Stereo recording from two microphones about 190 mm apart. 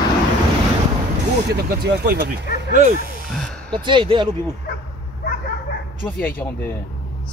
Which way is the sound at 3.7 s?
25° right (ahead or behind).